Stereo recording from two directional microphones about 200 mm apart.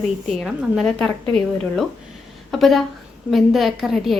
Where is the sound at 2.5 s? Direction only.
Centre (ahead or behind).